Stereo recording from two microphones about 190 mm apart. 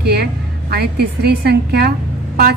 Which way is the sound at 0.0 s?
55° right (ahead or behind).